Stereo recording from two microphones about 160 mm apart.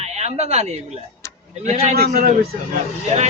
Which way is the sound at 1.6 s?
45° right (ahead or behind).